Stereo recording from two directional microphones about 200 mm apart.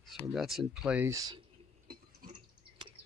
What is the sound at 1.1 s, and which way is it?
Speech, 20° right (ahead or behind).